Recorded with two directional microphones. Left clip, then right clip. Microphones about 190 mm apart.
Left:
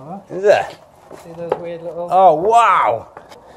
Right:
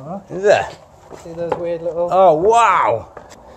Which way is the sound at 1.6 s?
45° right (ahead or behind).